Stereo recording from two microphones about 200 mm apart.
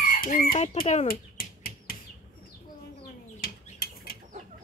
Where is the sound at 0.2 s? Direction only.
40° left (ahead or behind).